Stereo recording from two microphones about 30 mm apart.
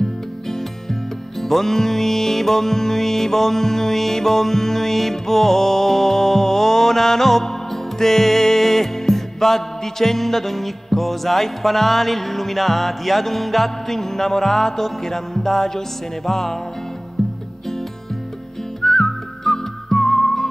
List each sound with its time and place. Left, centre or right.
1.4 s music: centre
18.8 s whistling: centre